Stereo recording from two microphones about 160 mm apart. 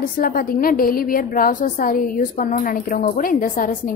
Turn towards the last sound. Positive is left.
turn(degrees=55)  # may be behind; listen again after turning